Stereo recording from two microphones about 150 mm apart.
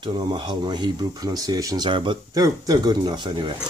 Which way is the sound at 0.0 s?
35° right (ahead or behind).